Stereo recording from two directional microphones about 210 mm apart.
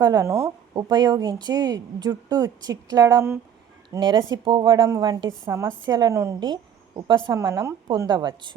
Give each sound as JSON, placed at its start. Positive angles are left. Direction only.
{"t": 0.0, "sound": "a woman's voice", "side_deg": -15}